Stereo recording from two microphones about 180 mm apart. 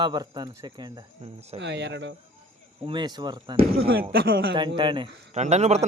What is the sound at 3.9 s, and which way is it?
Speech, 60° right (ahead or behind).